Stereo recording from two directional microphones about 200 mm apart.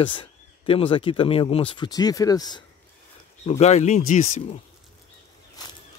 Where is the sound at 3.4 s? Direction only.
35° left (ahead or behind).